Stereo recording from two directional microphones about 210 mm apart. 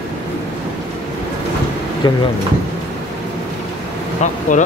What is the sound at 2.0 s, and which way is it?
Speech, 20° left (ahead or behind).